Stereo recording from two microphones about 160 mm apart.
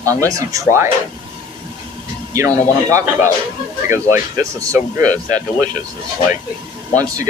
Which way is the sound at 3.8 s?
15° right (ahead or behind).